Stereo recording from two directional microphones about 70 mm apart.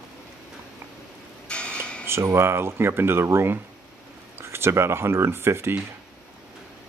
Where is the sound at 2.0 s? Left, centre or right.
Right.